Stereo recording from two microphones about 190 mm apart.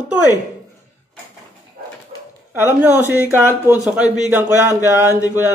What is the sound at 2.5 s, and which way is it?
A man's voice, 10° right (ahead or behind).